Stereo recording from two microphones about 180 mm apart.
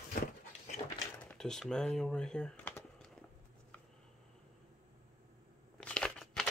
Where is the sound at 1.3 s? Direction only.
5° left (ahead or behind).